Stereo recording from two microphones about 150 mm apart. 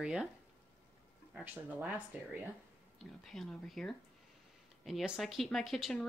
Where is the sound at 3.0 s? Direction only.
Centre (ahead or behind).